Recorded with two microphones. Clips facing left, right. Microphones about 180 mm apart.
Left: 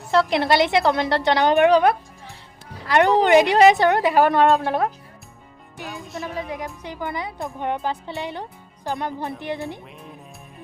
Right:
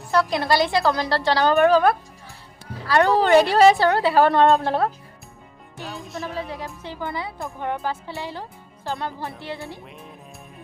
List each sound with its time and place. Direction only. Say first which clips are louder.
0.1 s a woman's voice: left 2 dB; 25° left (ahead or behind)
5.9 s speech: even; centre (ahead or behind)
6.8 s speech: right 1 dB; 15° left (ahead or behind)